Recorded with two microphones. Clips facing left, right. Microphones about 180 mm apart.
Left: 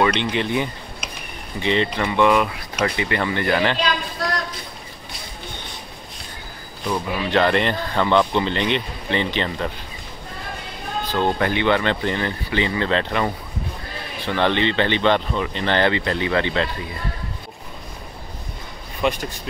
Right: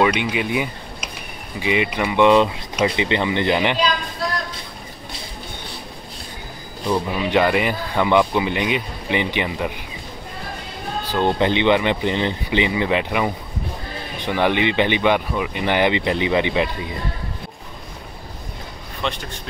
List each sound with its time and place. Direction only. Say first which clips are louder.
0.0 s speech: right 1 dB; 10° right (ahead or behind)
6.9 s speech: right 2 dB; 10° right (ahead or behind)
11.1 s speech: right 2 dB; 15° right (ahead or behind)
19.0 s speech: left 5 dB; 10° left (ahead or behind)